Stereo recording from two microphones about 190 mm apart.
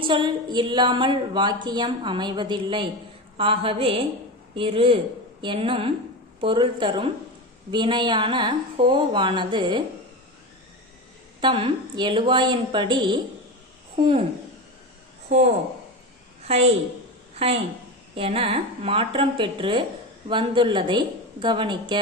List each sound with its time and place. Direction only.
0.0 s a woman's voice: 25° right (ahead or behind)
11.4 s a woman's voice: 25° right (ahead or behind)
15.3 s a woman's voice: 35° right (ahead or behind)
16.5 s a woman's voice: 35° right (ahead or behind)